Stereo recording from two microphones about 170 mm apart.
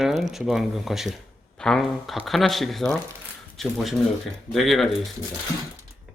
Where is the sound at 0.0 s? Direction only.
Centre (ahead or behind).